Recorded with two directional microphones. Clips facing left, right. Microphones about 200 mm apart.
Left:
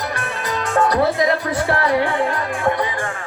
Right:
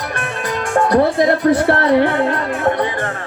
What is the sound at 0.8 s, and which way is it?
A woman's voice, 55° right (ahead or behind).